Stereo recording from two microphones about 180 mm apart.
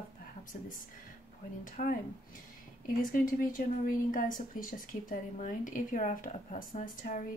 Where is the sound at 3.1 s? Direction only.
50° left (ahead or behind).